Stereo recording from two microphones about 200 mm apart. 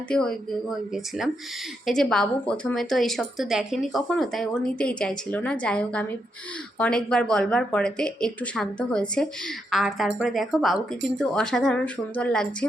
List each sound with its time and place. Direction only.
0.1 s speech: 5° left (ahead or behind)